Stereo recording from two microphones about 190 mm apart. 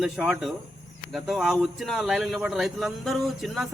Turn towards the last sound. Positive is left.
turn(degrees=0)  # may be behind; listen again after turning